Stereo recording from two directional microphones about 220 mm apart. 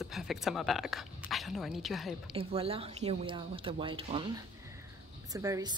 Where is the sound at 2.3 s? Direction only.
25° right (ahead or behind).